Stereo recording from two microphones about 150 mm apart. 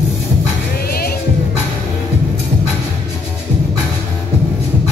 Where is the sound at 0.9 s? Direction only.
90° left.